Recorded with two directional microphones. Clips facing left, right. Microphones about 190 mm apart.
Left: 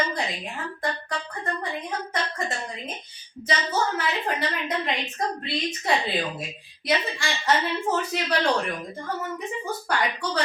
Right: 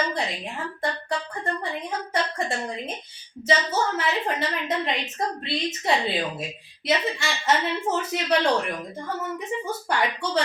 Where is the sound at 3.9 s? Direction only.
25° right (ahead or behind).